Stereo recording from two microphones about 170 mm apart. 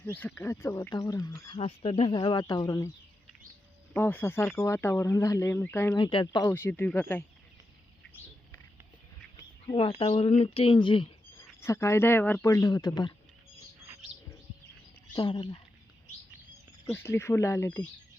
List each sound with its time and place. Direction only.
0.0 s speech: 10° left (ahead or behind)
1.5 s speech: 30° left (ahead or behind)
3.9 s speech: 10° left (ahead or behind)
6.0 s speech: 30° left (ahead or behind)
6.4 s speech: 15° left (ahead or behind)
9.6 s speech: 30° left (ahead or behind)
11.3 s speech: 15° left (ahead or behind)
15.1 s speech: 30° left (ahead or behind)
16.8 s speech: 15° left (ahead or behind)